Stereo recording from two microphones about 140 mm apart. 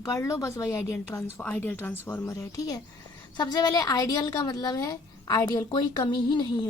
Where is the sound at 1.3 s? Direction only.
10° left (ahead or behind).